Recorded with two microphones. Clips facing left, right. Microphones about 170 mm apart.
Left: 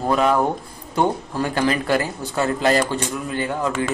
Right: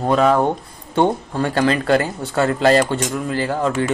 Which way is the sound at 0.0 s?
25° right (ahead or behind).